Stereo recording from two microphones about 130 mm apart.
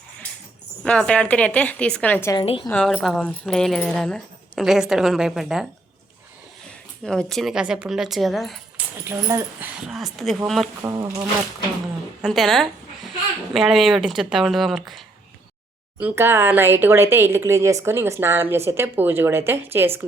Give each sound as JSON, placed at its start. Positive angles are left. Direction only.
{"t": 0.9, "sound": "a woman's voice", "side_deg": 10}
{"t": 2.4, "sound": "a woman's voice", "side_deg": 45}
{"t": 2.6, "sound": "a woman's voice", "side_deg": 10}
{"t": 7.0, "sound": "speech", "side_deg": 5}
{"t": 10.9, "sound": "speech", "side_deg": -25}
{"t": 12.2, "sound": "speech", "side_deg": 0}
{"t": 16.0, "sound": "speech", "side_deg": -15}